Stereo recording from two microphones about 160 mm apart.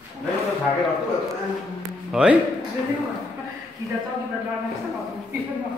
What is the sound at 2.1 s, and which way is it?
Speech, 5° right (ahead or behind).